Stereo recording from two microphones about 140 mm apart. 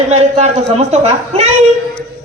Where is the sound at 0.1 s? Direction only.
50° right (ahead or behind).